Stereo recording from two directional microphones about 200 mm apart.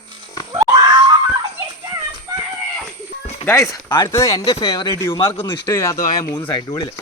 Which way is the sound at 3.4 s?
15° left (ahead or behind).